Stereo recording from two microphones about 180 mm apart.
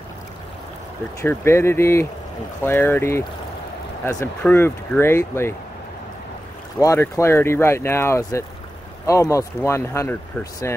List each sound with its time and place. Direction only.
1.2 s speech: 15° left (ahead or behind)
6.8 s speech: 15° left (ahead or behind)